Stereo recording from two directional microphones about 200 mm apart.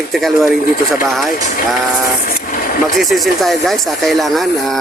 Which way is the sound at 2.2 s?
45° left (ahead or behind).